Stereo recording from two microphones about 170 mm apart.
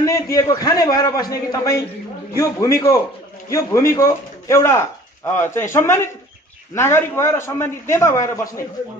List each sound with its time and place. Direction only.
0.0 s a man's voice: 20° left (ahead or behind)